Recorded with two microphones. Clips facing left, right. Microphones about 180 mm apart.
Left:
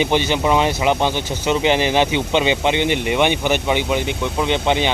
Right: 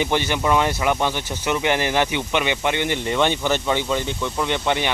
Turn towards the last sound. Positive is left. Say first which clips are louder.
# left 4 dB
turn(degrees=20)  # may be behind; listen again after turning